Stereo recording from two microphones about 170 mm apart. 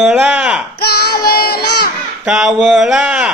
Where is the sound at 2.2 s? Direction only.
5° right (ahead or behind).